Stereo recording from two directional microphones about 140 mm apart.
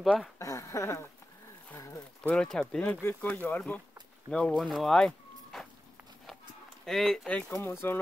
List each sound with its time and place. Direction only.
0.0 s speech: centre (ahead or behind)
0.4 s speech: 20° left (ahead or behind)
2.2 s speech: 5° left (ahead or behind)
4.7 s a sound: 5° left (ahead or behind)
6.9 s speech: 5° left (ahead or behind)